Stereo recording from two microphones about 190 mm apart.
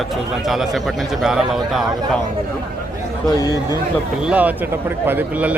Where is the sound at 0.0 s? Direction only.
Centre (ahead or behind).